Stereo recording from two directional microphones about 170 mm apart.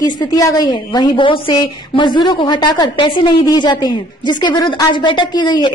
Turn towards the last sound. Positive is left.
turn(degrees=25)  # may be behind; listen again after turning